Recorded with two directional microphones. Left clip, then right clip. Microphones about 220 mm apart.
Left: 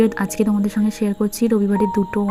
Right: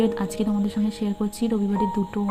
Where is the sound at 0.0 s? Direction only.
20° left (ahead or behind).